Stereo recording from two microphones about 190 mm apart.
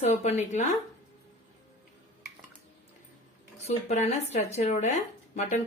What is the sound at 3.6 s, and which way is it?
A woman's voice, 35° left (ahead or behind).